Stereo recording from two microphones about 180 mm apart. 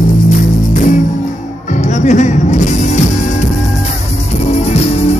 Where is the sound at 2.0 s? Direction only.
40° left (ahead or behind).